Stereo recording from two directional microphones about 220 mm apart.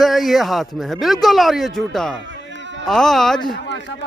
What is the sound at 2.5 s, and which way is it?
Music, 55° right (ahead or behind).